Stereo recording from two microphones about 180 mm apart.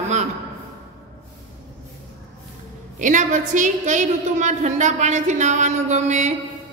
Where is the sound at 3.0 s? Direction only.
45° right (ahead or behind).